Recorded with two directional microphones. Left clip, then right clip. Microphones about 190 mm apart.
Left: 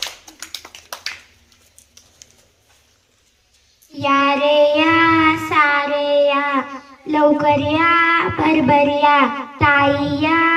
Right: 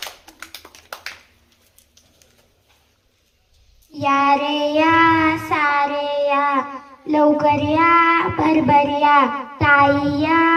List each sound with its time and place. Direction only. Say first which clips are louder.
0.7 s finger snapping: left 6 dB; 25° left (ahead or behind)
3.9 s child singing: even; 5° right (ahead or behind)